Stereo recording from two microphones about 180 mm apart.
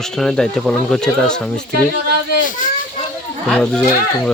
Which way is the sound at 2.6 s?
45° left (ahead or behind).